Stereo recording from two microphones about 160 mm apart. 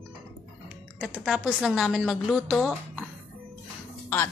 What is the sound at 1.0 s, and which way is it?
A woman's voice, centre (ahead or behind).